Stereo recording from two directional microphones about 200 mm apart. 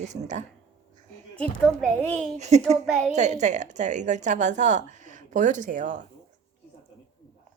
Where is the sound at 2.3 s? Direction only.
35° right (ahead or behind).